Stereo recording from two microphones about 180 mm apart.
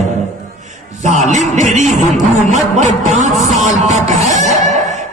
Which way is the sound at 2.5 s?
45° right (ahead or behind).